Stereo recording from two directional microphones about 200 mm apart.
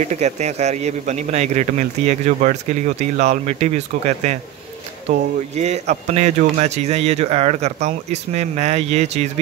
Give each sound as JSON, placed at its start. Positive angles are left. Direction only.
{"t": 0.0, "sound": "a man's voice", "side_deg": -35}